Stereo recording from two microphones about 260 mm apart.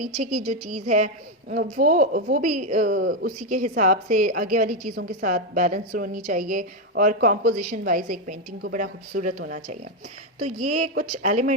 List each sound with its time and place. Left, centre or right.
0.0 s a woman's voice: right